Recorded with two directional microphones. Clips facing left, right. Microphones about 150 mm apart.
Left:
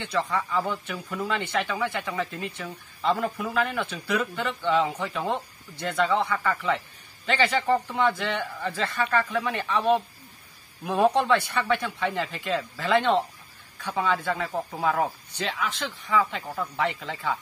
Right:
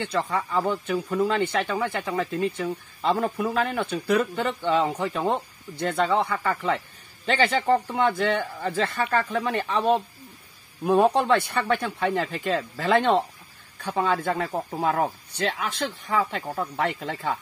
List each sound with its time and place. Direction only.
0.1 s speech: 35° right (ahead or behind)
3.1 s speech: 25° right (ahead or behind); by 17.4 s 45° right (ahead or behind)